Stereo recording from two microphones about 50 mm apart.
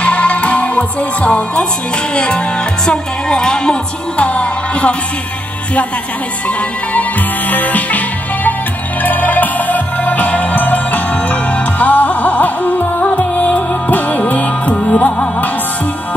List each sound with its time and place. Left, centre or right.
0.0 s music: left
2.9 s speech: centre
4.2 s music: left
6.9 s music: left
9.0 s music: left